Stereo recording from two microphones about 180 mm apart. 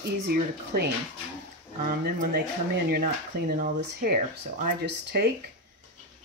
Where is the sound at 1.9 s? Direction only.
55° right (ahead or behind).